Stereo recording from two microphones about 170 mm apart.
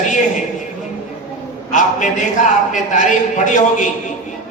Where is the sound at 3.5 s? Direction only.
45° left (ahead or behind).